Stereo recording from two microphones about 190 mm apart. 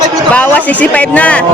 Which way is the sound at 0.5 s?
10° left (ahead or behind).